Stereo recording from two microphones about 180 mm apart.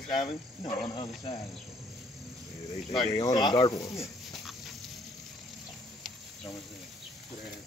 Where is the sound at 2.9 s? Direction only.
20° left (ahead or behind).